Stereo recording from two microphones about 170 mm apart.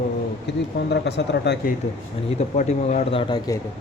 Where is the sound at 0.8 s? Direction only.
90° left.